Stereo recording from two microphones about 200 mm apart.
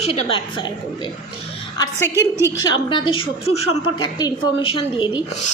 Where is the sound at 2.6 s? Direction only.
25° left (ahead or behind).